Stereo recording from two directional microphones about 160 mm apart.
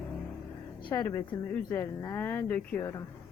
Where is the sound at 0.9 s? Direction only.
20° left (ahead or behind).